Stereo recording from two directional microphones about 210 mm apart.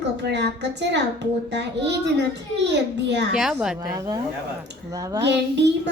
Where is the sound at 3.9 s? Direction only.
15° right (ahead or behind).